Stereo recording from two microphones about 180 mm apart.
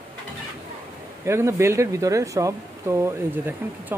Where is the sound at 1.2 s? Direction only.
15° right (ahead or behind).